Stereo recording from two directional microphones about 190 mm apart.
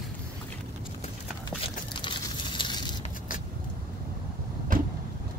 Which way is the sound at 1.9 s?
25° left (ahead or behind).